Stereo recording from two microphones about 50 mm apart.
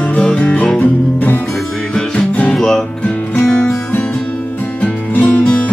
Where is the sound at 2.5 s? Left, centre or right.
Centre.